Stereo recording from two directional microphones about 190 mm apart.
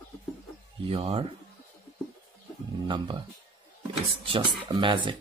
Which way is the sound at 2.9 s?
25° right (ahead or behind).